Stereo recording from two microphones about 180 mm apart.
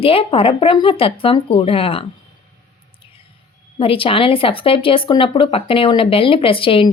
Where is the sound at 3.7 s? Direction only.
30° left (ahead or behind).